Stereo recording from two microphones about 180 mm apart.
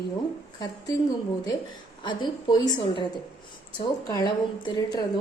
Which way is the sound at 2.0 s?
25° left (ahead or behind).